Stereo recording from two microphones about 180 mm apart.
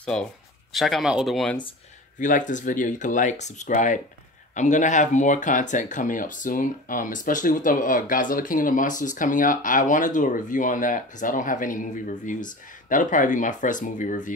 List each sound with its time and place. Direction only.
0.0 s speech: 5° left (ahead or behind)
2.1 s speech: 45° left (ahead or behind)